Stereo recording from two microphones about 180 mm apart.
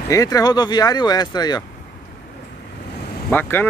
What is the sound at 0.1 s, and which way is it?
Speech, 20° left (ahead or behind).